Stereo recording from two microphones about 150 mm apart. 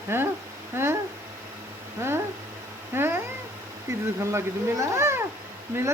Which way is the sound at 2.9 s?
15° right (ahead or behind).